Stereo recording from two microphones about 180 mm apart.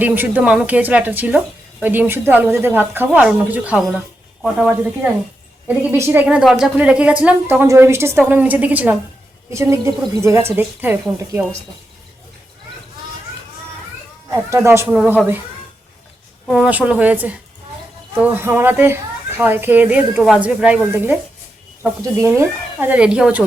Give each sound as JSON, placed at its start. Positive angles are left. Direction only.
{"t": 0.0, "sound": "speech", "side_deg": -10}
{"t": 14.3, "sound": "speech", "side_deg": -15}
{"t": 16.5, "sound": "speech", "side_deg": -5}